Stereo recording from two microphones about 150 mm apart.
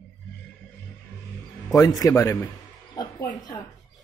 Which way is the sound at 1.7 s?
25° left (ahead or behind).